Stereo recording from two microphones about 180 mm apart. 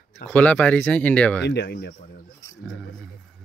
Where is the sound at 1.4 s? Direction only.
65° left (ahead or behind).